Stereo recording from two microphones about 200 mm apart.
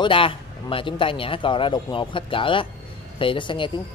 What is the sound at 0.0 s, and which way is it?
A man's voice, 25° left (ahead or behind).